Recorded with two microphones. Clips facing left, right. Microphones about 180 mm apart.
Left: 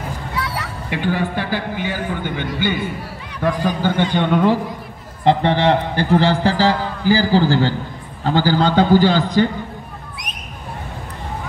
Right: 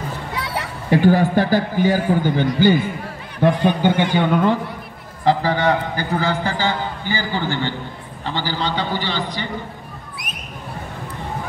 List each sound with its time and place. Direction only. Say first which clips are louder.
0.8 s a man's voice: right 7 dB; 40° right (ahead or behind)
3.3 s a man's voice: right 3 dB; 25° right (ahead or behind); by 4.6 s 5° right (ahead or behind)
5.2 s a man's voice: left 2 dB; 25° left (ahead or behind); by 9.5 s 45° left (ahead or behind)